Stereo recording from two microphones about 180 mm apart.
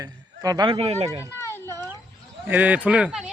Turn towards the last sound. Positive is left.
turn(degrees=-5)  # may be behind; listen again after turning